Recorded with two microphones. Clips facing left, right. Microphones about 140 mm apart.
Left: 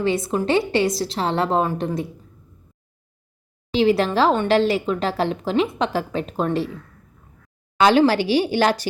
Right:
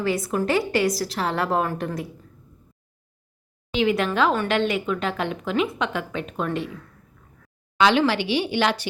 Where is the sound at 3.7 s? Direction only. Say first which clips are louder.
Left 4 dB; 35° left (ahead or behind).